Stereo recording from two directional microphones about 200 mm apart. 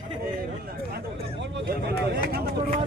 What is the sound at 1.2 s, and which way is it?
Speech, 60° right (ahead or behind).